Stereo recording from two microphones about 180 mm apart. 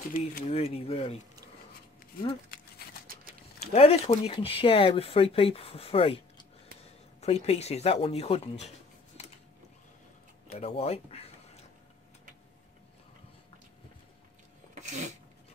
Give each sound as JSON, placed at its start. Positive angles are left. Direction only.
{"t": 0.1, "sound": "speech", "side_deg": 50}
{"t": 0.5, "sound": "speech", "side_deg": 35}
{"t": 3.7, "sound": "speech", "side_deg": 35}
{"t": 10.6, "sound": "speech", "side_deg": 35}
{"t": 14.7, "sound": "sneeze", "side_deg": -40}